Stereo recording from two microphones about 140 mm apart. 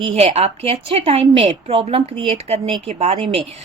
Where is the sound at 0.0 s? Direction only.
45° right (ahead or behind).